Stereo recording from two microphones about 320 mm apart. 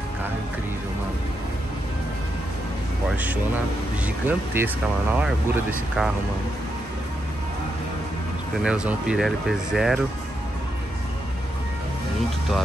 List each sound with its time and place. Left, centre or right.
4.0 s speech: centre
8.6 s speech: centre